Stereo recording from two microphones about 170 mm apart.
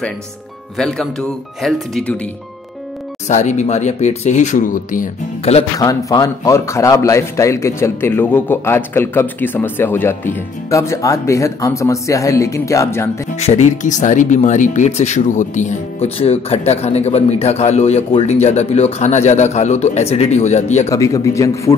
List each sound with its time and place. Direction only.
0.7 s speech: 5° left (ahead or behind)
3.3 s speech: 45° left (ahead or behind)
5.4 s speech: 35° left (ahead or behind)
5.8 s a man's voice: 20° left (ahead or behind)
13.4 s speech: 45° left (ahead or behind)
20.9 s a man's voice: 20° left (ahead or behind)